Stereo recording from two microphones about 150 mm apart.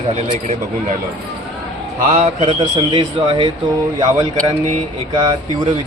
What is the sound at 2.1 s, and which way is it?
A man's voice, 45° right (ahead or behind).